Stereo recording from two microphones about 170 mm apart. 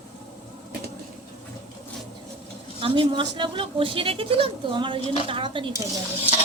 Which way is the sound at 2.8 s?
30° right (ahead or behind).